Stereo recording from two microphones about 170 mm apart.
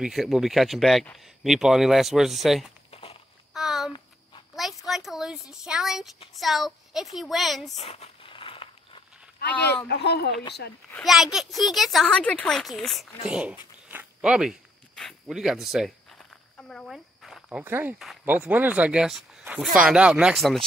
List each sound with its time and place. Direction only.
0.0 s speech: centre (ahead or behind)
2.9 s walk: 35° left (ahead or behind)
3.5 s a sound: centre (ahead or behind)
4.6 s speech: centre (ahead or behind)
7.7 s a sound: 40° left (ahead or behind)
9.5 s speech: 10° left (ahead or behind)
9.8 s speech: 75° left (ahead or behind)
10.9 s speech: centre (ahead or behind)
13.8 s a sound: 10° right (ahead or behind)
17.9 s speech: 5° right (ahead or behind)